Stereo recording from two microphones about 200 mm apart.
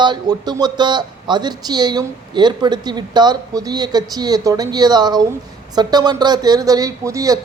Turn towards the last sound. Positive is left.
turn(degrees=-15)  # may be behind; listen again after turning